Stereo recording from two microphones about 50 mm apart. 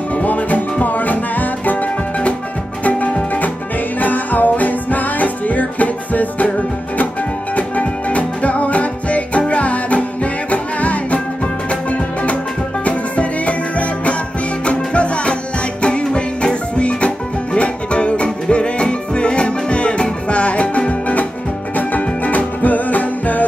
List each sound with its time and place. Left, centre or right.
0.1 s music: left
7.5 s music: left
12.8 s music: left